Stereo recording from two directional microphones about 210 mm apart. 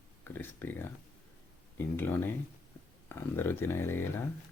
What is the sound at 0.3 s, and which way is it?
Speech, 10° left (ahead or behind).